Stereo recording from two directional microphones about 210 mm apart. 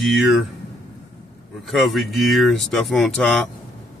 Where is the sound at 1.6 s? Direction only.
Centre (ahead or behind).